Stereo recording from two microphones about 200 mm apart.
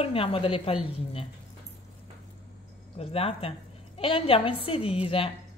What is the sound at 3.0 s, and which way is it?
A woman's voice, 30° left (ahead or behind).